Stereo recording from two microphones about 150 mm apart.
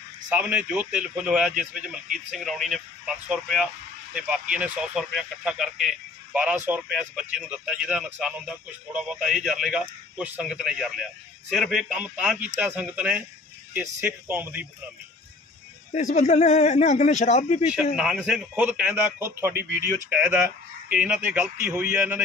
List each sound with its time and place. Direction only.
0.3 s a man's voice: 10° right (ahead or behind)
15.9 s speech: 50° left (ahead or behind)
17.9 s a man's voice: 5° right (ahead or behind)